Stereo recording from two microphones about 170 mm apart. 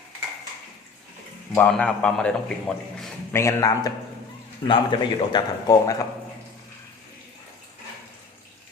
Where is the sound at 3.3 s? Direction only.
15° left (ahead or behind).